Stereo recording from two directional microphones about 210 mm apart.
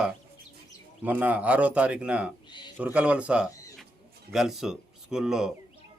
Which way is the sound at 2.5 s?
20° left (ahead or behind).